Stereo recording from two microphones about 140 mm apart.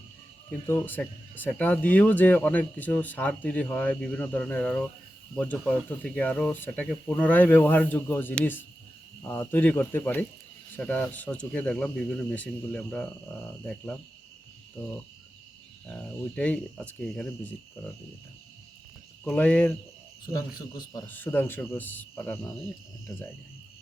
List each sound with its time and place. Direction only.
0.7 s speech: 15° left (ahead or behind)
15.9 s speech: 10° left (ahead or behind)
19.2 s speech: 10° left (ahead or behind)
20.6 s speech: 30° left (ahead or behind)
21.1 s speech: 15° left (ahead or behind)